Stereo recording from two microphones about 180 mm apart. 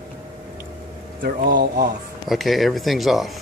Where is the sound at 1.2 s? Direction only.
55° right (ahead or behind).